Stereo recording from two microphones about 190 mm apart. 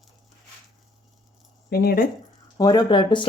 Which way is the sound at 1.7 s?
55° left (ahead or behind).